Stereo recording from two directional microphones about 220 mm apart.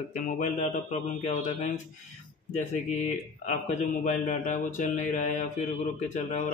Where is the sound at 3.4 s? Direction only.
35° left (ahead or behind).